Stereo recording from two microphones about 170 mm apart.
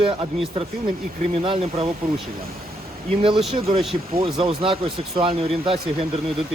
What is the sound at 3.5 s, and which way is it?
Speech, 35° right (ahead or behind).